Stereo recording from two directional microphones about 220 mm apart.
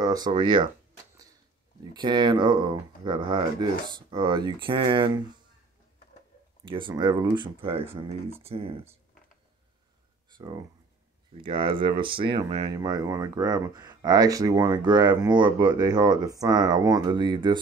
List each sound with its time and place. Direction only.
0.0 s speech: 15° right (ahead or behind)
2.0 s speech: 20° right (ahead or behind)
6.6 s speech: 20° right (ahead or behind)
10.3 s speech: 20° right (ahead or behind)